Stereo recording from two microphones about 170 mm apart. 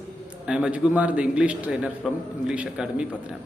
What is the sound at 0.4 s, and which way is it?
A man's voice, 5° right (ahead or behind).